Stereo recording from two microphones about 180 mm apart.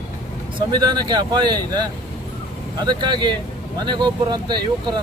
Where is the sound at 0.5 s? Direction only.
25° right (ahead or behind).